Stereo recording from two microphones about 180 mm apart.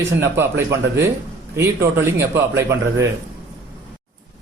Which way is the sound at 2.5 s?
15° right (ahead or behind).